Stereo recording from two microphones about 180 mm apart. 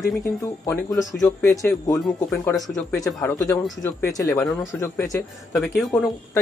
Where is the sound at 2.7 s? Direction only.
Centre (ahead or behind).